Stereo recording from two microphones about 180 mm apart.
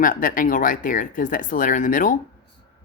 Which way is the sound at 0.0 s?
50° left (ahead or behind).